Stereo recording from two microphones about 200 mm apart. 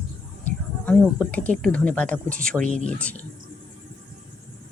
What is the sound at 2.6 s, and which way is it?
Speech, 35° right (ahead or behind).